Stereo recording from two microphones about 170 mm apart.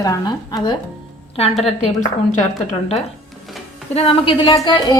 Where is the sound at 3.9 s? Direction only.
35° left (ahead or behind).